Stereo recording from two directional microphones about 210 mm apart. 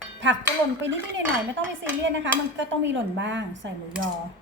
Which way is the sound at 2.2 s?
60° right (ahead or behind).